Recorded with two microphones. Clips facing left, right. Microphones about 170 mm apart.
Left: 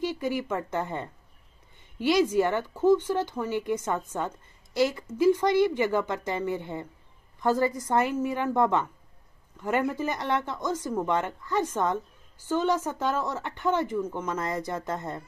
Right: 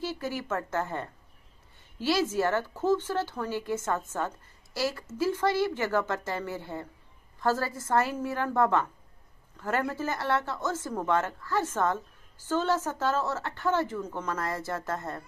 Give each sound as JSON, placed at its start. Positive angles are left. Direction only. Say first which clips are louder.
{"t": 0.0, "sound": "a woman's voice", "louder": "left 4 dB", "side_deg": 15}